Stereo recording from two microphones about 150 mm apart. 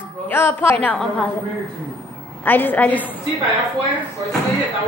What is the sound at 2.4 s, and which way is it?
Speech, 10° left (ahead or behind).